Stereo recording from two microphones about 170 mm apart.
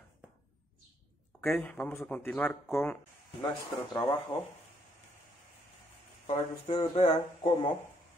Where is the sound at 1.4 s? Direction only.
5° left (ahead or behind).